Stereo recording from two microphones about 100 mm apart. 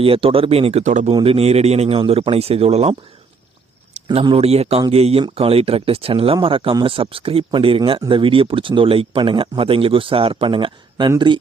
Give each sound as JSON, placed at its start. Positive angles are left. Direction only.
{"t": 0.0, "sound": "speech", "side_deg": -65}
{"t": 4.1, "sound": "a man's voice", "side_deg": -70}
{"t": 5.3, "sound": "speech", "side_deg": -75}